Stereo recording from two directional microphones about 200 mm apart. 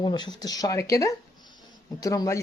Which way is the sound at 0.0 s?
20° left (ahead or behind).